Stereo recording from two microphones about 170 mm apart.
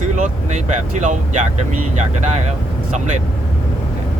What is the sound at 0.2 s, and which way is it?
Speech, 45° right (ahead or behind).